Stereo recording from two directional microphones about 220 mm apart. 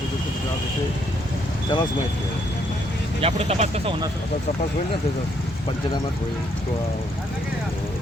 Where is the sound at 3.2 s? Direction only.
30° right (ahead or behind).